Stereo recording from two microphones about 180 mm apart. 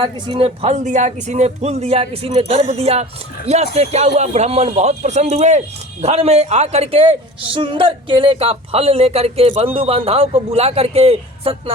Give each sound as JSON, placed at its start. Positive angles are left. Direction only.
{"t": 0.0, "sound": "speech", "side_deg": -30}